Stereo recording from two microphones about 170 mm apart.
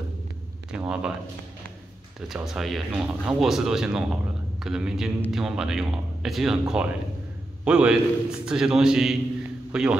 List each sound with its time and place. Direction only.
0.7 s speech: 5° right (ahead or behind)
2.1 s speech: 5° right (ahead or behind)
7.6 s a man's voice: 5° right (ahead or behind)